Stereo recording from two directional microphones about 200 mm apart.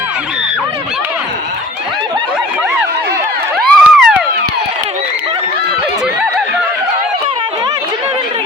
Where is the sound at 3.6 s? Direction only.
Centre (ahead or behind).